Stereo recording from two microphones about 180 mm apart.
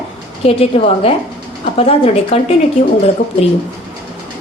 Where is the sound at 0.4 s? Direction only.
35° left (ahead or behind).